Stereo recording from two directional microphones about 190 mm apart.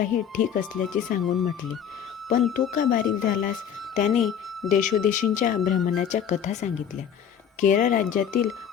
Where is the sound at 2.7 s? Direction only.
50° left (ahead or behind).